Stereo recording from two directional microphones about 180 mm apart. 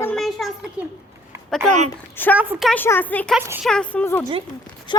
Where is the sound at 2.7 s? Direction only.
10° left (ahead or behind).